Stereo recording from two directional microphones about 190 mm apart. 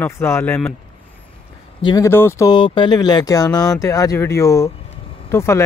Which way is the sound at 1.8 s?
20° left (ahead or behind).